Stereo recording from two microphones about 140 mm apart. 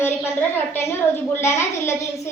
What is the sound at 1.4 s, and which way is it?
Speech, 20° left (ahead or behind).